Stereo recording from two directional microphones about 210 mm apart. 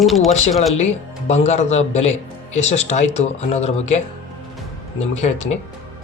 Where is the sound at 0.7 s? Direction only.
30° left (ahead or behind).